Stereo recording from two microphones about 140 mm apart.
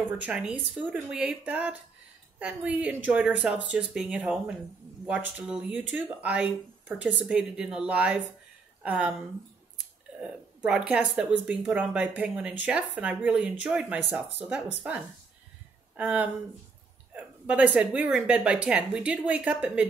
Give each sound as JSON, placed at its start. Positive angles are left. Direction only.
{"t": 0.2, "sound": "speech", "side_deg": -5}
{"t": 10.2, "sound": "speech", "side_deg": -5}
{"t": 16.0, "sound": "speech", "side_deg": -10}